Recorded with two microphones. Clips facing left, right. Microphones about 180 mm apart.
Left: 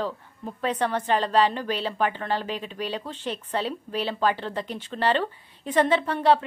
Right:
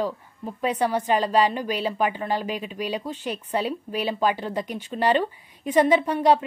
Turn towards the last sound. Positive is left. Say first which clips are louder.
# right 2 dB
turn(degrees=-15)  # may be behind; listen again after turning